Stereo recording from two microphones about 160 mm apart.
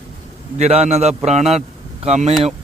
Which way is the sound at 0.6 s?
40° right (ahead or behind).